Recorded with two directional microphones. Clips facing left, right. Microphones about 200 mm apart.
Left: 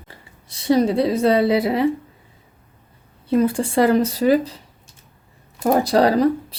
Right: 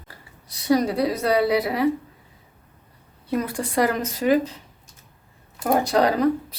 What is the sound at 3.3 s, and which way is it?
A woman's voice, 30° left (ahead or behind).